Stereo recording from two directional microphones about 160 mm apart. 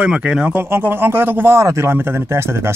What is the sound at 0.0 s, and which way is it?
Speech, 5° right (ahead or behind).